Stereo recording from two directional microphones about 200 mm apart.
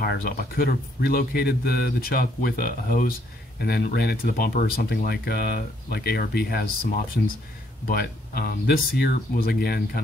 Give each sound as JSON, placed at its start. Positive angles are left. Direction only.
{"t": 0.0, "sound": "speech", "side_deg": 50}